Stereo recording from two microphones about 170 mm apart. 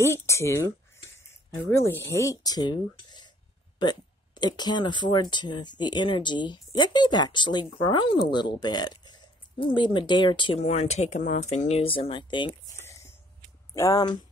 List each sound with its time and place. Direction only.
0.0 s speech: 15° left (ahead or behind)
10.6 s speech: 40° left (ahead or behind)
12.7 s a sound: 15° left (ahead or behind)
13.7 s speech: 20° left (ahead or behind)